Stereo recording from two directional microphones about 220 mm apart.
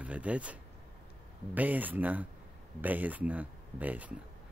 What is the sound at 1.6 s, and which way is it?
Speech, 5° right (ahead or behind).